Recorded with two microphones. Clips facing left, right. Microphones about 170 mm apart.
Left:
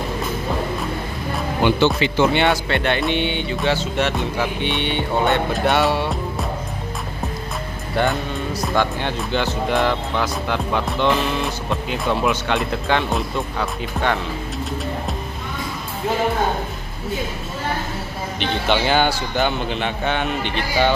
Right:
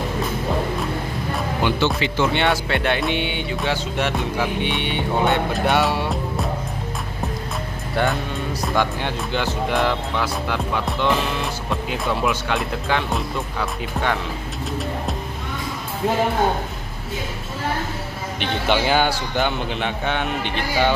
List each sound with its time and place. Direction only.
1.8 s speech: 20° left (ahead or behind)
2.3 s speech: centre (ahead or behind)
7.9 s speech: centre (ahead or behind)
18.4 s speech: 10° right (ahead or behind)